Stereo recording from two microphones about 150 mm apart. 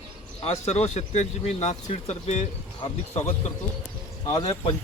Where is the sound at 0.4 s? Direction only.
45° left (ahead or behind).